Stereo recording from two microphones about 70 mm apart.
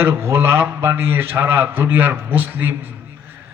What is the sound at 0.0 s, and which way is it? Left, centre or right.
A man's voice, right.